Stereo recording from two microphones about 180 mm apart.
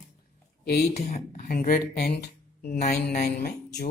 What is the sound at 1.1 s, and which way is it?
Speech, 50° left (ahead or behind).